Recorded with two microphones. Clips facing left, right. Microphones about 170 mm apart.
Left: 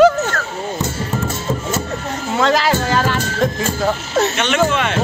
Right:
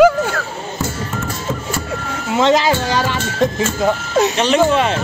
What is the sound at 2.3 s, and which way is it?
Music, 20° right (ahead or behind).